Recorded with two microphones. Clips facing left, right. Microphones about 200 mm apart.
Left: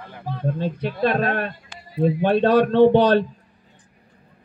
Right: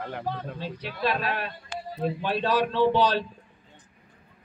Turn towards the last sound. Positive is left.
turn(degrees=55)  # may be behind; listen again after turning